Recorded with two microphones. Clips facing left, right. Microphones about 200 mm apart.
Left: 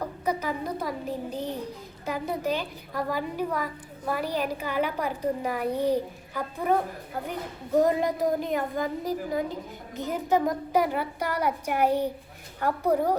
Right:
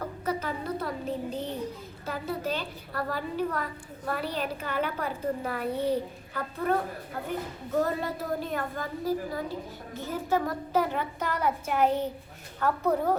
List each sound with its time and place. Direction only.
0.0 s a woman's voice: 15° left (ahead or behind)